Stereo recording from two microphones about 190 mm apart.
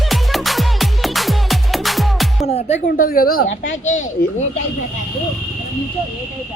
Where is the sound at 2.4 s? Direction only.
35° left (ahead or behind).